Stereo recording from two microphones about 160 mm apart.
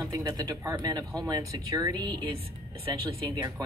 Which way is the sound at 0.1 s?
20° right (ahead or behind).